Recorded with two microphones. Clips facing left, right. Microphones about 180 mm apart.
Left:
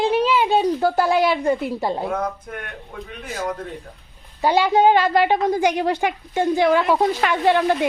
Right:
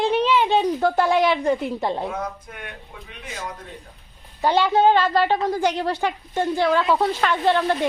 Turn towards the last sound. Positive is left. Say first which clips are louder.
# left 2 dB
turn(degrees=15)  # may be behind; listen again after turning